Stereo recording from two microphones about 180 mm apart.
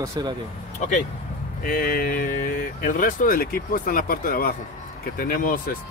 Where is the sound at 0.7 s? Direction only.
45° left (ahead or behind).